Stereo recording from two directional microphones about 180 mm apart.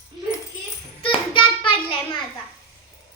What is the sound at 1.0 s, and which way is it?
Child singing, 30° left (ahead or behind).